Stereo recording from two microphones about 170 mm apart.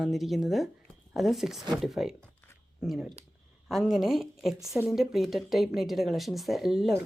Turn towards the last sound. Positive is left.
turn(degrees=0)  # may be behind; listen again after turning